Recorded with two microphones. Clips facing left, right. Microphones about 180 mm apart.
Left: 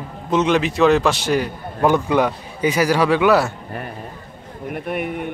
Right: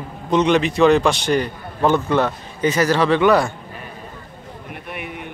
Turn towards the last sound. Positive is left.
turn(degrees=50)  # may be behind; listen again after turning